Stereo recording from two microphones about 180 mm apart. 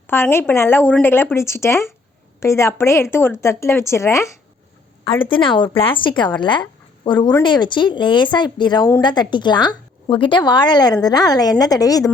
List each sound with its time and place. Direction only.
0.1 s a woman's voice: 15° left (ahead or behind)
5.0 s speech: 30° left (ahead or behind)